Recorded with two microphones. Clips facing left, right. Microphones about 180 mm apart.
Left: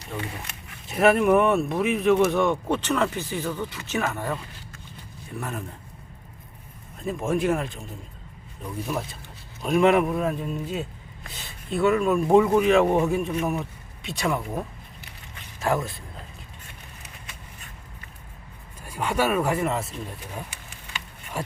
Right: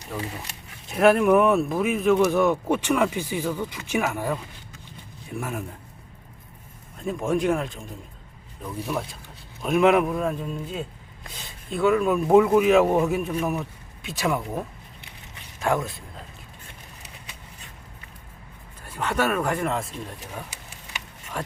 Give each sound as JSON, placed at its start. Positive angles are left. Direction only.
{"t": 0.9, "sound": "speech", "side_deg": 0}
{"t": 7.0, "sound": "speech", "side_deg": 0}
{"t": 15.6, "sound": "speech", "side_deg": 0}
{"t": 18.9, "sound": "speech", "side_deg": 10}
{"t": 21.4, "sound": "speech", "side_deg": 10}